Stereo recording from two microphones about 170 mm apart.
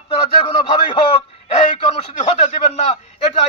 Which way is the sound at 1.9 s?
40° left (ahead or behind).